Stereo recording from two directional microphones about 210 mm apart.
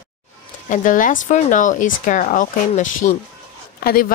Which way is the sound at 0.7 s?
40° left (ahead or behind).